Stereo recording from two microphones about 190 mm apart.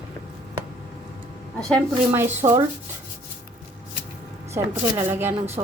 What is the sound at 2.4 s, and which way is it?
Speech, 25° right (ahead or behind).